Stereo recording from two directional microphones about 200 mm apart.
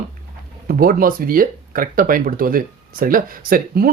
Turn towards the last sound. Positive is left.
turn(degrees=-45)  # may be behind; listen again after turning